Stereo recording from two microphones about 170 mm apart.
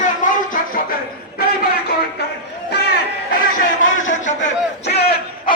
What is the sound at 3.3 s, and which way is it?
Crowd, 50° left (ahead or behind).